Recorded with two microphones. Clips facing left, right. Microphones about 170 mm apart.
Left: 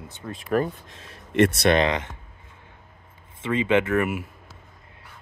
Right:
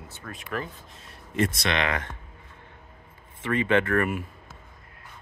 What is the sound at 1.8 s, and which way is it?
Speech, 20° left (ahead or behind).